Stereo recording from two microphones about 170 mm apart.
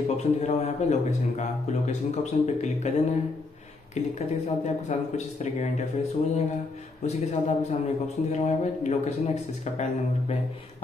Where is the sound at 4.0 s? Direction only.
40° left (ahead or behind).